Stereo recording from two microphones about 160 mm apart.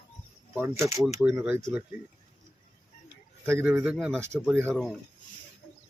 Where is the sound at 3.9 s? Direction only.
Centre (ahead or behind).